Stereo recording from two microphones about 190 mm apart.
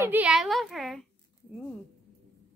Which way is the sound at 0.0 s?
10° right (ahead or behind).